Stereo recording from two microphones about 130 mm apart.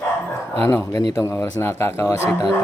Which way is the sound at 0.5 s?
20° left (ahead or behind).